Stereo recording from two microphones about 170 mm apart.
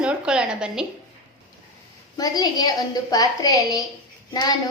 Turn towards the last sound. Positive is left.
turn(degrees=25)  # may be behind; listen again after turning